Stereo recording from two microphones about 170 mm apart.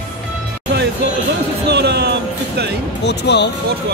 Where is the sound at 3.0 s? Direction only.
85° left.